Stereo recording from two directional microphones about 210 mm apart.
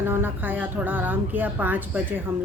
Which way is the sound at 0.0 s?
10° right (ahead or behind).